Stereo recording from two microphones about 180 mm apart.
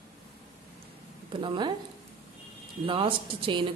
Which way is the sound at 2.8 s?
30° right (ahead or behind).